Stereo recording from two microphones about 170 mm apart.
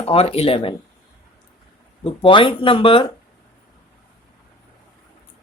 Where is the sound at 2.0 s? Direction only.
30° left (ahead or behind).